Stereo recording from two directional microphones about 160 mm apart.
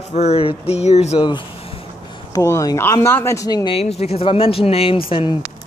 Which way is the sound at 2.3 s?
20° left (ahead or behind).